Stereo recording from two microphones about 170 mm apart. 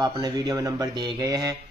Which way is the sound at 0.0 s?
20° right (ahead or behind).